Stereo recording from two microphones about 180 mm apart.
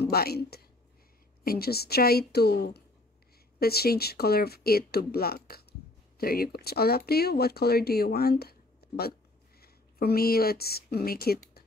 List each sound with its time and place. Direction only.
0.0 s a woman's voice: 60° left (ahead or behind)